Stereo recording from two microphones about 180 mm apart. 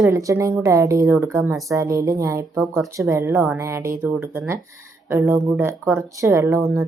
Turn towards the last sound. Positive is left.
turn(degrees=-15)  # may be behind; listen again after turning